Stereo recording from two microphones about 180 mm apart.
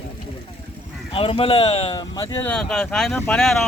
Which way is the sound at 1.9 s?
20° left (ahead or behind).